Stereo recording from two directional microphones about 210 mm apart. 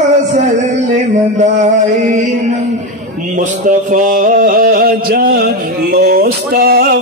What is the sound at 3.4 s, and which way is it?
Mantra, 35° right (ahead or behind).